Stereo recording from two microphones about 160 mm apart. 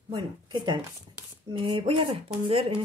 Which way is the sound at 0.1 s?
30° right (ahead or behind).